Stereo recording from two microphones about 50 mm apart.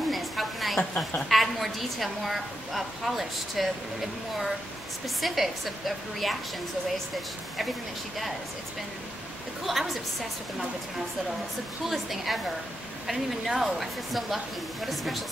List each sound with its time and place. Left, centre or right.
0.1 s a sound: centre
0.7 s a woman's voice: centre
1.3 s a woman's voice: centre
5.0 s a woman's voice: centre
9.7 s a woman's voice: centre
11.8 s a woman's voice: centre